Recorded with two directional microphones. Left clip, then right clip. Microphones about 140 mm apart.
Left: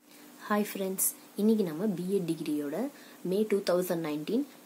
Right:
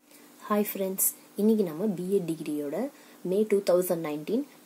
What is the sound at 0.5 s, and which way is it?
A woman's voice, 25° right (ahead or behind).